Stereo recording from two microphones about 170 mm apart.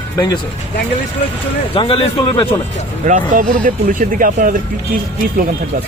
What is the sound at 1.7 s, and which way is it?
Speech, 35° left (ahead or behind).